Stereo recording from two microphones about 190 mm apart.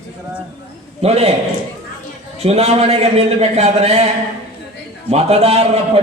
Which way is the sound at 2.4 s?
35° right (ahead or behind).